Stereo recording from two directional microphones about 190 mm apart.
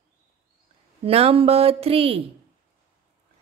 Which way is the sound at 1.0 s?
30° right (ahead or behind).